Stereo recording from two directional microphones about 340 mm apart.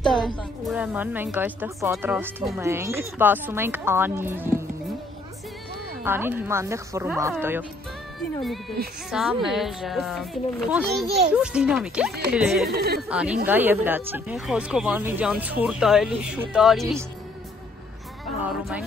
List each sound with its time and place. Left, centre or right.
0.0 s a woman's voice: centre
6.0 s speech: centre
8.8 s speech: right
9.1 s a woman's voice: centre
12.6 s speech: right
13.1 s a woman's voice: centre